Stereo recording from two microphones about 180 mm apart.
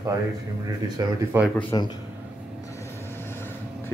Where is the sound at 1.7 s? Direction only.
25° left (ahead or behind).